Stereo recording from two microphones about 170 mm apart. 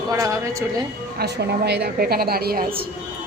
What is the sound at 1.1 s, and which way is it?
A woman's voice, 70° right (ahead or behind).